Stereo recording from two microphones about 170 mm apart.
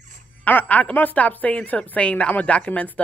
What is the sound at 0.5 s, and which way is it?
A woman's voice, 10° left (ahead or behind).